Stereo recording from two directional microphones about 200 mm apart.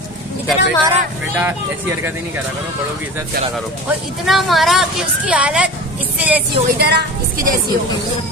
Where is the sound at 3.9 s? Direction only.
Centre (ahead or behind).